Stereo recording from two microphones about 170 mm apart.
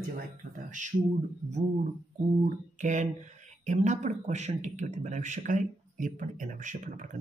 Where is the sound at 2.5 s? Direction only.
45° right (ahead or behind).